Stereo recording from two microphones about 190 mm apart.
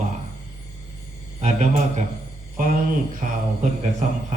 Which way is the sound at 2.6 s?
45° right (ahead or behind).